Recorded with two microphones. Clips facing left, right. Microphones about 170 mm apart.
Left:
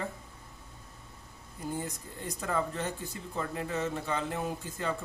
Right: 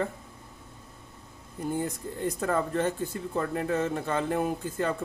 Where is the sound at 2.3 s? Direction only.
50° right (ahead or behind).